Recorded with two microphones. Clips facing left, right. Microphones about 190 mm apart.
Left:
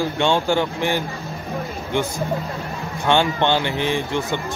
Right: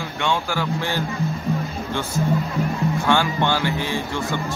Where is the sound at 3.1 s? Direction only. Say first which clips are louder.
Left 4 dB; 20° left (ahead or behind).